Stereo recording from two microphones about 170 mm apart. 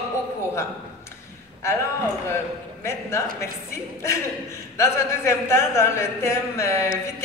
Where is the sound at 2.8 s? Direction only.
15° left (ahead or behind).